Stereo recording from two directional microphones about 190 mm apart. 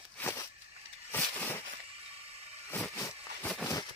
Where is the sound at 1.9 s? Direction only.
30° right (ahead or behind).